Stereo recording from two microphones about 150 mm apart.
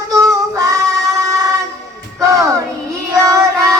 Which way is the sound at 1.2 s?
20° right (ahead or behind).